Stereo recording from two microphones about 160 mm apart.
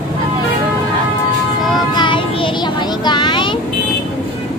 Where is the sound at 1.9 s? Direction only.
30° left (ahead or behind).